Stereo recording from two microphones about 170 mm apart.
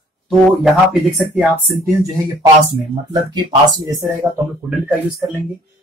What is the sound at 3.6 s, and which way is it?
Speech, 25° right (ahead or behind).